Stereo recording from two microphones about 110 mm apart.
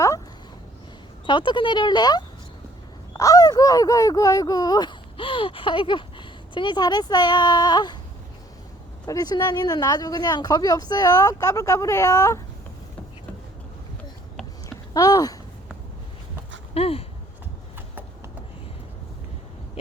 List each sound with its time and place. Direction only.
1.3 s speech: 45° left (ahead or behind)
9.0 s speech: 35° left (ahead or behind)
14.9 s speech: 35° left (ahead or behind)
16.7 s speech: 60° left (ahead or behind)